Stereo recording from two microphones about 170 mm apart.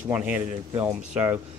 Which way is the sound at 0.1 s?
10° right (ahead or behind).